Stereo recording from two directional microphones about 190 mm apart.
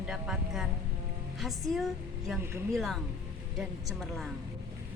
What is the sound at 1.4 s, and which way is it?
A woman's voice, centre (ahead or behind).